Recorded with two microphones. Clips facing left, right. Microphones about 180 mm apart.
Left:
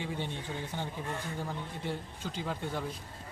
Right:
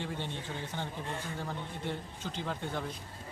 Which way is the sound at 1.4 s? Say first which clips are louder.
Left 1 dB; 10° left (ahead or behind).